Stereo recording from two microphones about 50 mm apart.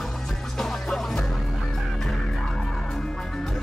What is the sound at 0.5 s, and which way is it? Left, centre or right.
Music, centre.